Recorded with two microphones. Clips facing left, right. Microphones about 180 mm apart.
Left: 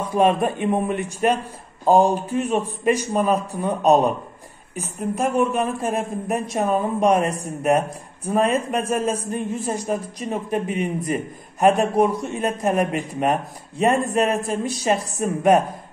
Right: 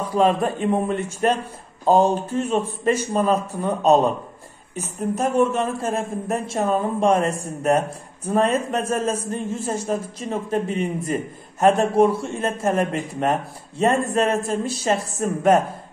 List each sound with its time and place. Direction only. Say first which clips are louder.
0.0 s a man's voice: left 1 dB; 20° left (ahead or behind)
5.1 s a man's voice: right 1 dB; 10° left (ahead or behind)